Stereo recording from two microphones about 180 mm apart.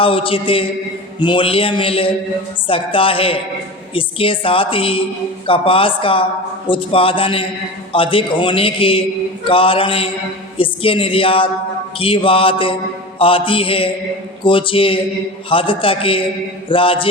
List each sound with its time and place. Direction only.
0.0 s a man's voice: 30° left (ahead or behind)
13.1 s mantra: 30° left (ahead or behind)
14.4 s a man's voice: 30° left (ahead or behind)